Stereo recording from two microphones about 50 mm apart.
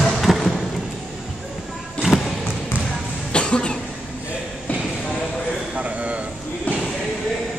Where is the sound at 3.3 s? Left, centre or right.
Left.